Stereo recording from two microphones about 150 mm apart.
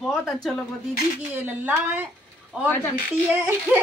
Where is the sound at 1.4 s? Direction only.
10° right (ahead or behind).